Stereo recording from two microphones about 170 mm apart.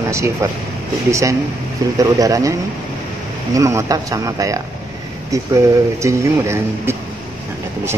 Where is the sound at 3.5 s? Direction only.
20° right (ahead or behind).